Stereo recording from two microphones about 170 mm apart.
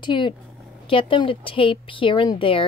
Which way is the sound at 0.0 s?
30° left (ahead or behind).